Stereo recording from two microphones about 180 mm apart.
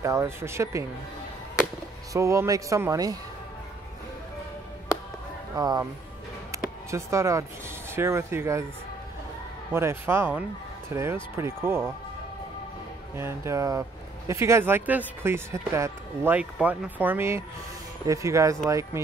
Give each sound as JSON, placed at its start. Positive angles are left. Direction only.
{"t": 0.0, "sound": "speech", "side_deg": -15}
{"t": 2.1, "sound": "speech", "side_deg": -15}
{"t": 5.6, "sound": "speech", "side_deg": -20}
{"t": 6.5, "sound": "basketball bounce", "side_deg": -15}
{"t": 6.9, "sound": "speech", "side_deg": -15}
{"t": 9.8, "sound": "speech", "side_deg": -15}
{"t": 13.1, "sound": "speech", "side_deg": -15}